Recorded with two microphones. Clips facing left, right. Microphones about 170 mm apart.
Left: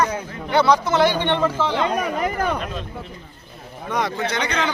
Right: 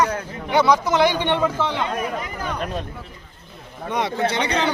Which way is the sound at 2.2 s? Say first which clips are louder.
Left 7 dB; 55° left (ahead or behind).